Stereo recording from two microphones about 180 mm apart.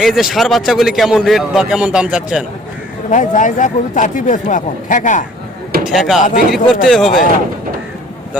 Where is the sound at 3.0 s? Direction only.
45° left (ahead or behind).